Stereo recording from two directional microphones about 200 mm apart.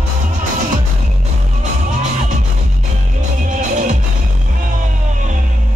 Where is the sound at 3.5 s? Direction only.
40° right (ahead or behind).